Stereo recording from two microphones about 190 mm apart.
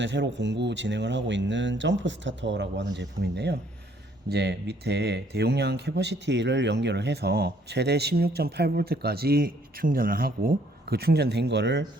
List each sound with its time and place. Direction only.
0.0 s speech: 70° right (ahead or behind)